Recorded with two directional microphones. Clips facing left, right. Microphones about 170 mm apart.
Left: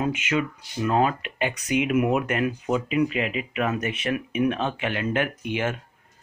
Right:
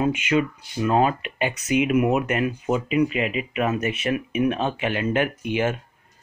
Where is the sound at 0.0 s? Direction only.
30° right (ahead or behind).